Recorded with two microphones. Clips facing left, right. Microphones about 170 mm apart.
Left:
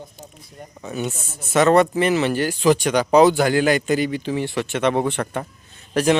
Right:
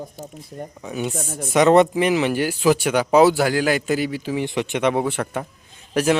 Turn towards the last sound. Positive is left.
turn(degrees=-10)  # may be behind; listen again after turning